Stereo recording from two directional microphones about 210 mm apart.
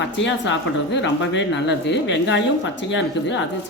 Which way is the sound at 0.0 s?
60° left (ahead or behind).